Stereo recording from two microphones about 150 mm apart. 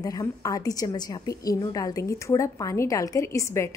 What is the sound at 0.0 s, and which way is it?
A woman's voice, 25° left (ahead or behind).